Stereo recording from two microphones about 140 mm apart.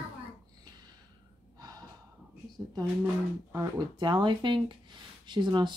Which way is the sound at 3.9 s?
35° right (ahead or behind).